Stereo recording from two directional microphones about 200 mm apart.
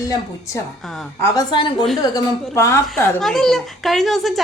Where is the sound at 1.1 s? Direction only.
20° left (ahead or behind).